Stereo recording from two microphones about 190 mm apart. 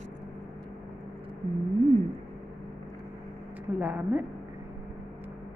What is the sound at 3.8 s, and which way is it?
Speech, 5° right (ahead or behind).